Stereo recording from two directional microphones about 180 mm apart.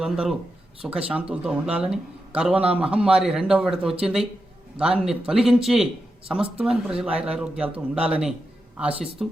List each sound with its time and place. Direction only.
0.0 s speech: centre (ahead or behind)